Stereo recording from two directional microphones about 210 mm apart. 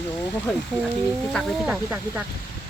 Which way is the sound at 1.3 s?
Centre (ahead or behind).